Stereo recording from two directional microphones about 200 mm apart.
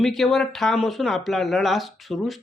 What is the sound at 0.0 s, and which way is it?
Speech, centre (ahead or behind).